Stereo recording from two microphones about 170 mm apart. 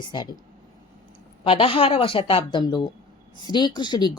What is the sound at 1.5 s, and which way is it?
A woman's voice, 35° left (ahead or behind).